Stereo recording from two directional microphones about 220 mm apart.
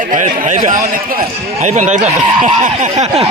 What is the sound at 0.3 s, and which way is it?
Speech, 35° right (ahead or behind).